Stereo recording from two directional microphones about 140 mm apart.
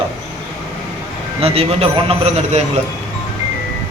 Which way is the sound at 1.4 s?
45° right (ahead or behind).